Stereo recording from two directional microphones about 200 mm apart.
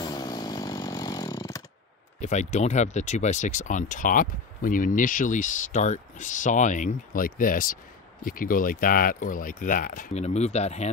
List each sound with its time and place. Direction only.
0.0 s chainsaw: 20° left (ahead or behind)
2.1 s speech: 35° left (ahead or behind)